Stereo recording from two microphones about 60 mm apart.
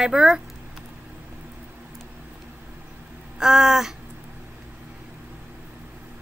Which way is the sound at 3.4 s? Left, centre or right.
Centre.